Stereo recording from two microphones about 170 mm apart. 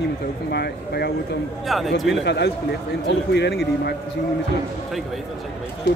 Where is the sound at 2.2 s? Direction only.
80° left.